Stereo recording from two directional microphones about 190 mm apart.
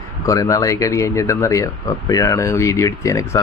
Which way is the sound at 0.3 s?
15° left (ahead or behind).